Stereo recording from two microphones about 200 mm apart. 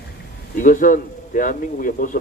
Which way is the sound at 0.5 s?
40° left (ahead or behind).